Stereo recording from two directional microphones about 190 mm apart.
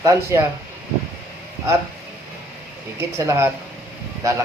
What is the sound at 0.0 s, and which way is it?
Speech, 15° right (ahead or behind).